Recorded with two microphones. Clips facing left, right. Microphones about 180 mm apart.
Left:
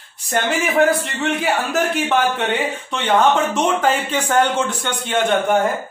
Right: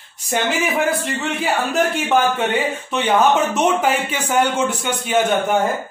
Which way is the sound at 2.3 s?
Centre (ahead or behind).